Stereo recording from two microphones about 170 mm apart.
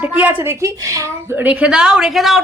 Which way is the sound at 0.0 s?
10° right (ahead or behind).